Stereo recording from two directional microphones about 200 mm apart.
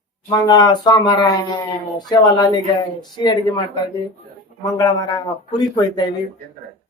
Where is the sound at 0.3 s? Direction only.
20° left (ahead or behind).